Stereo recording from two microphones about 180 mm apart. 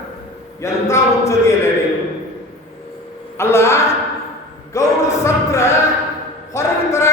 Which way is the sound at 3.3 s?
15° left (ahead or behind).